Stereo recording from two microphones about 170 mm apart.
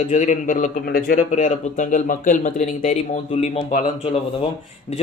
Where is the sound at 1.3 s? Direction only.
45° left (ahead or behind).